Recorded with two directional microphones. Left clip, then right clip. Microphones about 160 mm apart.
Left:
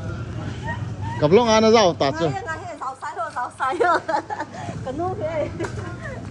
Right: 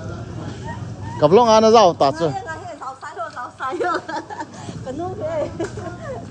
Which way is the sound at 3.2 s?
55° left (ahead or behind).